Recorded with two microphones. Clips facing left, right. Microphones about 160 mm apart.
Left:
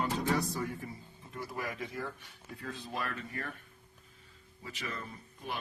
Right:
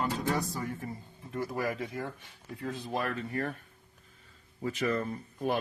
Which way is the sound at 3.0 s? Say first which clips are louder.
Right 7 dB; 30° right (ahead or behind).